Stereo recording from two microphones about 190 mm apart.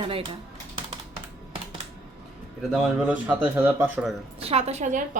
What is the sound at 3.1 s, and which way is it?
Speech, 10° right (ahead or behind).